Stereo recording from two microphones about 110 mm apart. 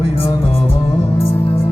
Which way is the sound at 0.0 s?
60° left (ahead or behind).